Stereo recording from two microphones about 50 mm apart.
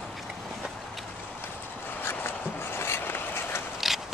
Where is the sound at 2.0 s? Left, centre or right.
Left.